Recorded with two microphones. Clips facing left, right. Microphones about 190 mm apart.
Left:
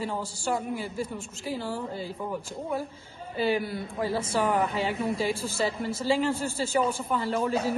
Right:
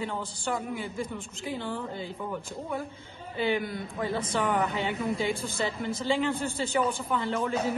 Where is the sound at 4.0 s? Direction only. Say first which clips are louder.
Left 2 dB; 30° left (ahead or behind).